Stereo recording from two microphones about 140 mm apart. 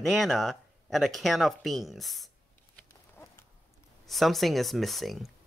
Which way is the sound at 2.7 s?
15° left (ahead or behind).